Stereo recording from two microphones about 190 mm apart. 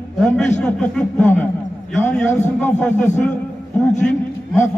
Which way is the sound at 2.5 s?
10° left (ahead or behind).